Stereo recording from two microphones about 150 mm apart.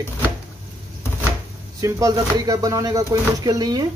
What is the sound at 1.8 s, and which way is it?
Speech, 25° right (ahead or behind).